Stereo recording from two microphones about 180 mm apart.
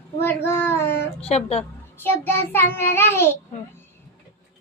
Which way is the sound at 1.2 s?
35° left (ahead or behind).